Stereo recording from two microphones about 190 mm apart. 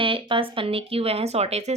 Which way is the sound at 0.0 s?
25° right (ahead or behind).